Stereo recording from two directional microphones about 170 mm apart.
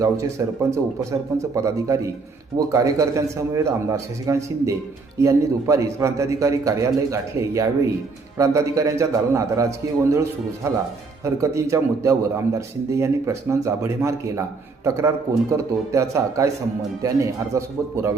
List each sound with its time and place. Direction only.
0.0 s a man's voice: 20° right (ahead or behind)